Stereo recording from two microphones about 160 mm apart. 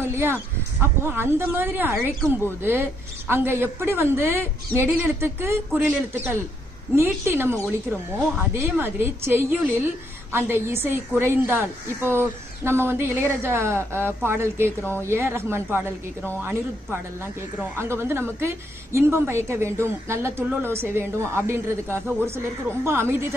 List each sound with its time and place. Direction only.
0.0 s crow: 15° right (ahead or behind)
1.0 s speech: 15° right (ahead or behind)